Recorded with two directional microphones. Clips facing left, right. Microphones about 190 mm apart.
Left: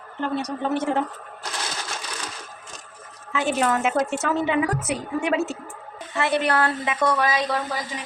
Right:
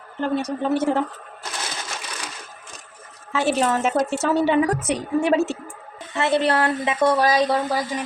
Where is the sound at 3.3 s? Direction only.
35° right (ahead or behind).